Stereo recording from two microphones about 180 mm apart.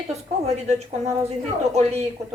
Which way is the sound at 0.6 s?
35° right (ahead or behind).